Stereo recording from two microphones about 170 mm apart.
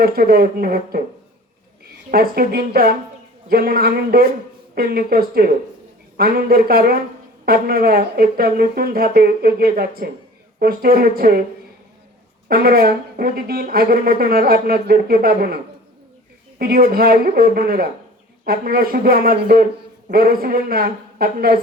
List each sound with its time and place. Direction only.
0.0 s speech: 65° right (ahead or behind)
2.0 s speech: 60° right (ahead or behind)
12.5 s speech: 65° right (ahead or behind)